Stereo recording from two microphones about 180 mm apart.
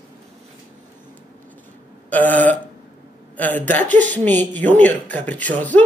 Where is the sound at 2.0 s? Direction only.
10° left (ahead or behind).